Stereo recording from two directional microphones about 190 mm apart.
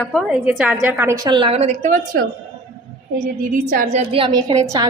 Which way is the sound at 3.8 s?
30° right (ahead or behind).